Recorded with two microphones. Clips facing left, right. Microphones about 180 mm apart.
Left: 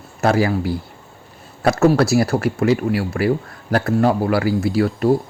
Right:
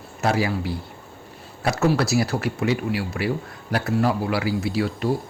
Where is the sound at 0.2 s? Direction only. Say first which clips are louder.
Left 5 dB; 55° left (ahead or behind).